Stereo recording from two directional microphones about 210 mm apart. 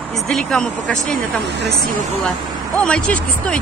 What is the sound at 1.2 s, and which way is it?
Speech, 50° right (ahead or behind).